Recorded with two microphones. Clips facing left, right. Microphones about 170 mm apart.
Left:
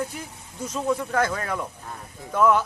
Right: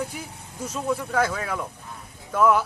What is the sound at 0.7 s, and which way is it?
A man's voice, 5° right (ahead or behind).